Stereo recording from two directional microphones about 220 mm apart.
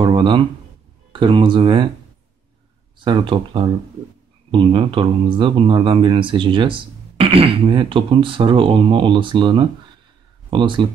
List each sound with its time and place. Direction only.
0.0 s speech: 25° right (ahead or behind)
3.0 s speech: 20° right (ahead or behind)